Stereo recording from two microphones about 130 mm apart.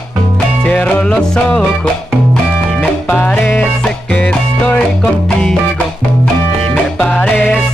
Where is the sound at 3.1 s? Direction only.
15° left (ahead or behind).